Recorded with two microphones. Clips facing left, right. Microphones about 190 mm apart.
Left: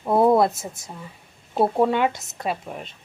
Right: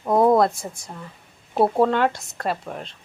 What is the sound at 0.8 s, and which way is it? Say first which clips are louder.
A woman's voice: right 1 dB; 5° left (ahead or behind).